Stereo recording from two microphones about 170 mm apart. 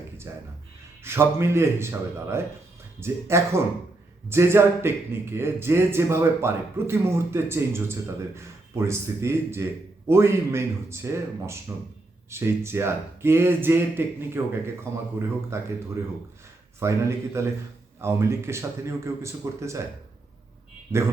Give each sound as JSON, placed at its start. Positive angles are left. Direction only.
{"t": 0.3, "sound": "speech", "side_deg": -15}
{"t": 15.5, "sound": "speech", "side_deg": -15}